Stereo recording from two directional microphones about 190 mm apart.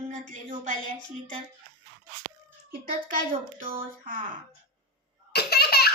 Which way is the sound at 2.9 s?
45° right (ahead or behind).